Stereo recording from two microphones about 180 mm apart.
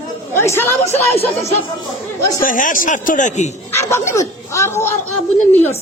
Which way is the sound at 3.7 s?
15° left (ahead or behind).